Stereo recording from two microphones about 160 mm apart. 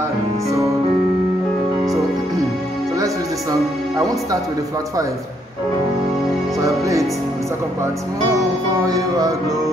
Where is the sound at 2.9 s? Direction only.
20° right (ahead or behind).